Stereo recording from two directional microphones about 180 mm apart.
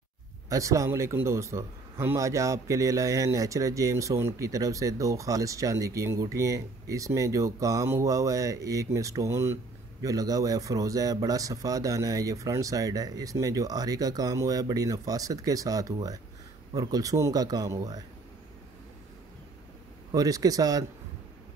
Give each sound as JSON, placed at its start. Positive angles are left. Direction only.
{"t": 0.5, "sound": "a man's voice", "side_deg": -15}
{"t": 20.1, "sound": "speech", "side_deg": -20}